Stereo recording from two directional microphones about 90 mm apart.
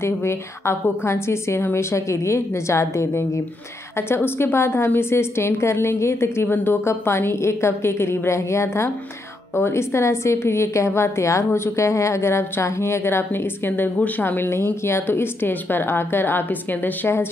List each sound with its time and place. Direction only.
0.0 s a woman's voice: 30° left (ahead or behind)